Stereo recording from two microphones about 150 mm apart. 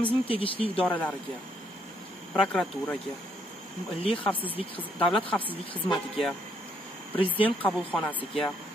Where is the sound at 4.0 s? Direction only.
40° left (ahead or behind).